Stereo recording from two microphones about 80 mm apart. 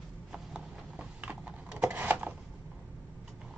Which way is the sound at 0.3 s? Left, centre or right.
Centre.